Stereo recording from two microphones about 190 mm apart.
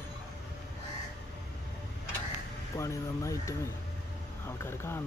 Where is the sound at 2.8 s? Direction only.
15° left (ahead or behind).